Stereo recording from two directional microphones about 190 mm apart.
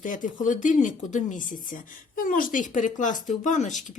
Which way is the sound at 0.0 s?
45° left (ahead or behind).